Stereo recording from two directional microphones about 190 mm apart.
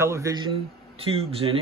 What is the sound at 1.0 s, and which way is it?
Speech, 30° right (ahead or behind).